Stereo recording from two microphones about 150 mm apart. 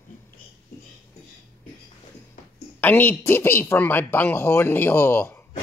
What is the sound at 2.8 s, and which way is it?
A woman's voice, 15° left (ahead or behind).